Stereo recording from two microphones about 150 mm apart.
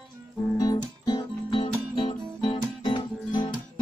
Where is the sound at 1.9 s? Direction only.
30° left (ahead or behind).